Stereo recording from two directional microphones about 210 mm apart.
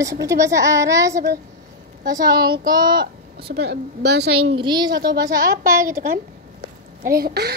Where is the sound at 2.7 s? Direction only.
20° right (ahead or behind).